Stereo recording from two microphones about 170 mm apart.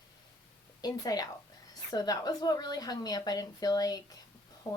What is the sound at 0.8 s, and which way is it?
Speech, 20° left (ahead or behind).